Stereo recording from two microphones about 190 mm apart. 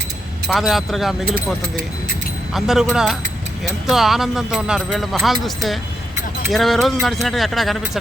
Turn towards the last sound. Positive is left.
turn(degrees=0)  # may be behind; listen again after turning